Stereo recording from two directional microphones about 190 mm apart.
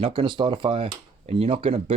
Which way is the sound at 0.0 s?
30° right (ahead or behind).